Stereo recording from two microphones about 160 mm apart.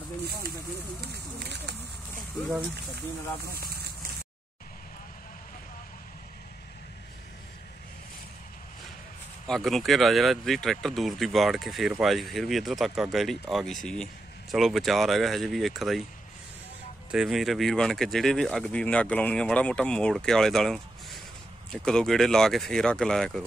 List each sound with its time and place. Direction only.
1.0 s speech: 90° right
3.5 s fire: 70° right (ahead or behind)
9.5 s speech: centre (ahead or behind)
17.1 s speech: centre (ahead or behind)